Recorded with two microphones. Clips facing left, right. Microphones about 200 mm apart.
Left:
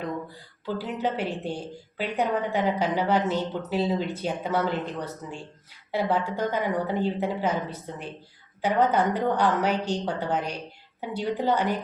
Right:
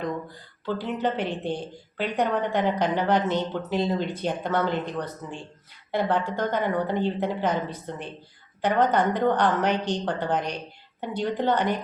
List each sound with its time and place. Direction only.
0.6 s a woman's voice: 5° left (ahead or behind)